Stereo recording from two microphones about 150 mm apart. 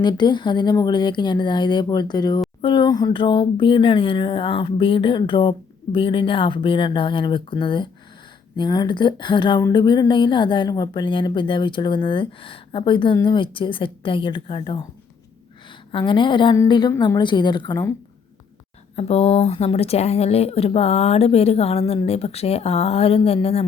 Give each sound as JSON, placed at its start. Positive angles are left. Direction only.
{"t": 0.0, "sound": "speech", "side_deg": 30}
{"t": 15.9, "sound": "speech", "side_deg": 35}
{"t": 18.9, "sound": "speech", "side_deg": 40}